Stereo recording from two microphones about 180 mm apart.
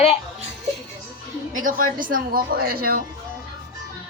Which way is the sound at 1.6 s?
50° right (ahead or behind).